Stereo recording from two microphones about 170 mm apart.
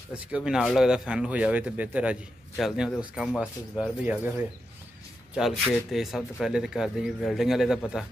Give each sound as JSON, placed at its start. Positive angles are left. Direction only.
{"t": 0.1, "sound": "speech", "side_deg": -5}